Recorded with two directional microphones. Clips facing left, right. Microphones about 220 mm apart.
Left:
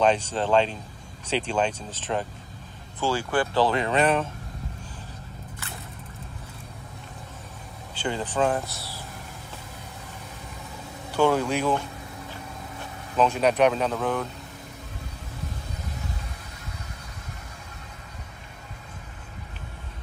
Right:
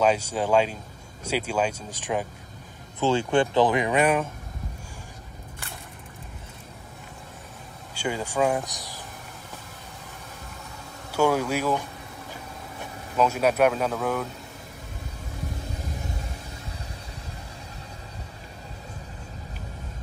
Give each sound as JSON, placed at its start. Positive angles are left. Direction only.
{"t": 0.0, "sound": "speech", "side_deg": -10}
{"t": 7.9, "sound": "speech", "side_deg": -10}
{"t": 11.1, "sound": "speech", "side_deg": -10}
{"t": 13.1, "sound": "speech", "side_deg": -10}